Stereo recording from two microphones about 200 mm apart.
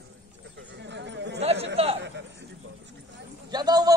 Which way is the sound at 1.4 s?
30° right (ahead or behind).